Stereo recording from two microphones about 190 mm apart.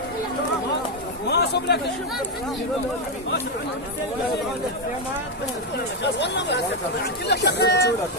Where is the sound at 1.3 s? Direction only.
60° left (ahead or behind).